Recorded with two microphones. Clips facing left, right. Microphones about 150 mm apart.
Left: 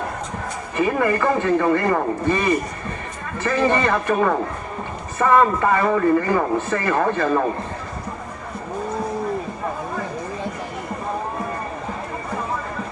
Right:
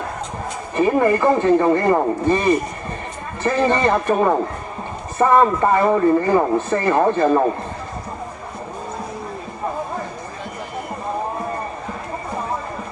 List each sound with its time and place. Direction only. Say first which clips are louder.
0.8 s speech: right 4 dB; 30° right (ahead or behind)
3.4 s speech: right 2 dB; 25° right (ahead or behind)